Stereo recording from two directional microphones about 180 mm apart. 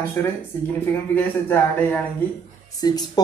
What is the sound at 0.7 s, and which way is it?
Speech, 10° left (ahead or behind).